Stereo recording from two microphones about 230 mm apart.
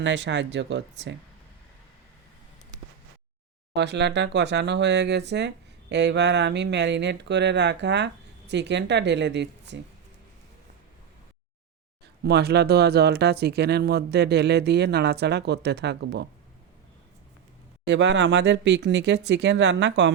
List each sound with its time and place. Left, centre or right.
0.0 s speech: right
3.8 s speech: right
12.2 s speech: right
17.8 s speech: right